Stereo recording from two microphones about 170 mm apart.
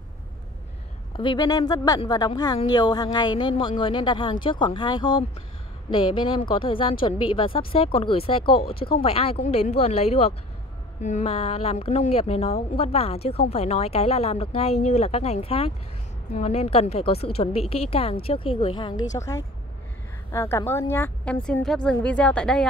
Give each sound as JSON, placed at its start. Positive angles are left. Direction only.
{"t": 1.1, "sound": "a woman's voice", "side_deg": 25}
{"t": 8.5, "sound": "speech", "side_deg": 65}
{"t": 8.9, "sound": "a woman's voice", "side_deg": 35}
{"t": 19.1, "sound": "a woman's voice", "side_deg": 20}